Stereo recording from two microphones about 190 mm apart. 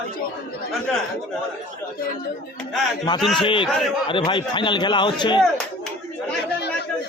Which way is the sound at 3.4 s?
25° left (ahead or behind).